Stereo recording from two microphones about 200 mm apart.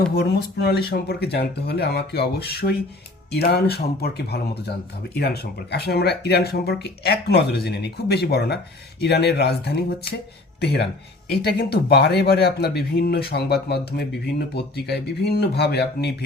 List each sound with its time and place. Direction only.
0.1 s speech: 55° left (ahead or behind)